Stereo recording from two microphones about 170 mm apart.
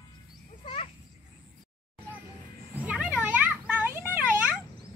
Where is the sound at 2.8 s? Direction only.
5° right (ahead or behind).